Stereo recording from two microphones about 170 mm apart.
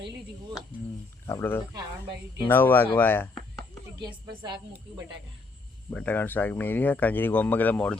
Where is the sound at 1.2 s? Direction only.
15° left (ahead or behind).